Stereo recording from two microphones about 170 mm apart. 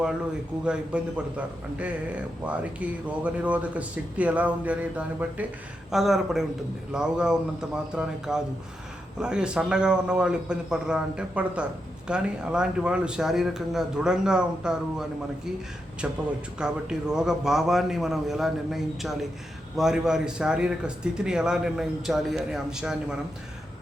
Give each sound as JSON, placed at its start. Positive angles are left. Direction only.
{"t": 0.6, "sound": "a man's voice", "side_deg": -5}
{"t": 16.0, "sound": "a man's voice", "side_deg": -5}